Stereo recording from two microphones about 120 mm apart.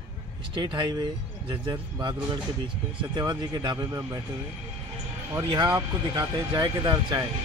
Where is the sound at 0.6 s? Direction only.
40° right (ahead or behind).